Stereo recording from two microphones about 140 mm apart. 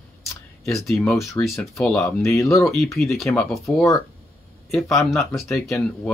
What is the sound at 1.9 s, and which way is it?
Speech, 20° left (ahead or behind).